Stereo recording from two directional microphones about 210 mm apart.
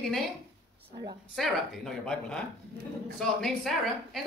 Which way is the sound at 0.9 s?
20° right (ahead or behind).